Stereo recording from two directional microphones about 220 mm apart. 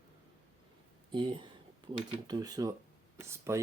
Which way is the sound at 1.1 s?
20° right (ahead or behind).